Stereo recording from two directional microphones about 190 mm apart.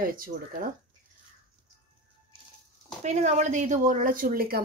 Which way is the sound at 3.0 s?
35° right (ahead or behind).